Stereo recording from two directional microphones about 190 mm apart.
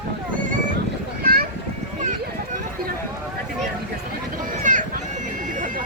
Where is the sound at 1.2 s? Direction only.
50° right (ahead or behind).